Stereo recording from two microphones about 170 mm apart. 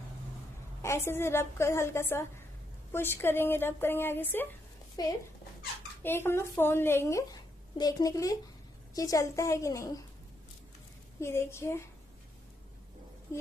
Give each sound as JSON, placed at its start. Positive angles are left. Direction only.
{"t": 0.8, "sound": "a woman's voice", "side_deg": 15}
{"t": 5.0, "sound": "a woman's voice", "side_deg": 25}
{"t": 11.1, "sound": "a woman's voice", "side_deg": 15}